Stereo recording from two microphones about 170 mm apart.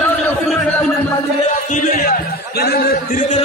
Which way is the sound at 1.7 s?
50° left (ahead or behind).